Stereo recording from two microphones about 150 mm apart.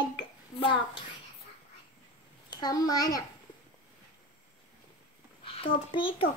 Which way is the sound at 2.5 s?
25° left (ahead or behind).